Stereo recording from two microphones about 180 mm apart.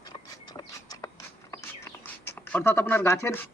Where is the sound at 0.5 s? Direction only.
20° left (ahead or behind).